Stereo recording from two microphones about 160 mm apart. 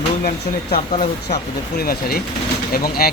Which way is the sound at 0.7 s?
40° left (ahead or behind).